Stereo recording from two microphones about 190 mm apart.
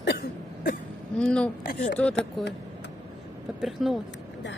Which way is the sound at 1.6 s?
50° left (ahead or behind).